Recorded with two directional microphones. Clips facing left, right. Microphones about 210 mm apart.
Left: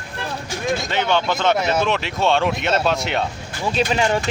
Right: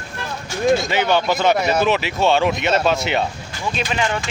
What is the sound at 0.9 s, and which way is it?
Speech, 5° right (ahead or behind).